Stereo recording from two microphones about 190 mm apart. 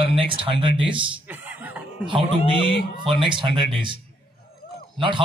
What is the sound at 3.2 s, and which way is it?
Speech, 25° right (ahead or behind).